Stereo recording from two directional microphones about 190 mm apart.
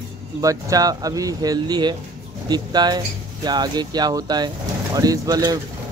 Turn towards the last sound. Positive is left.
turn(degrees=-20)  # may be behind; listen again after turning